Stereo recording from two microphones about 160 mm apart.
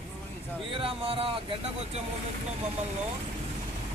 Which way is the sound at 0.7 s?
35° right (ahead or behind).